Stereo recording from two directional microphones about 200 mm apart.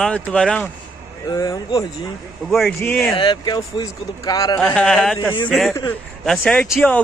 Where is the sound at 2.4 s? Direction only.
Centre (ahead or behind).